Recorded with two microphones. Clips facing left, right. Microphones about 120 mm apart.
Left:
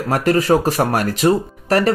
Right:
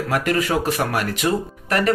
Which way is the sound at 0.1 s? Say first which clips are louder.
Left 6 dB; 35° left (ahead or behind).